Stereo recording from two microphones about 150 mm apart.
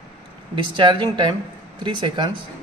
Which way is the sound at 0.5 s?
30° right (ahead or behind).